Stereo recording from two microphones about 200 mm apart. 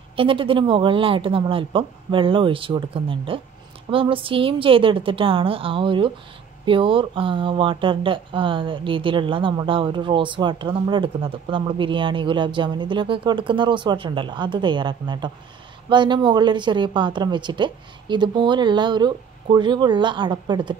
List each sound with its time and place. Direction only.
0.1 s speech: 25° right (ahead or behind)